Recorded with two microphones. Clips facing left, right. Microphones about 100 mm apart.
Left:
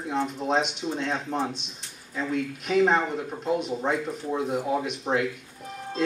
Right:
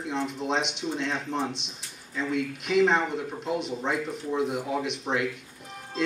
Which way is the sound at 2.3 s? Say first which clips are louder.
Left 1 dB; 40° left (ahead or behind).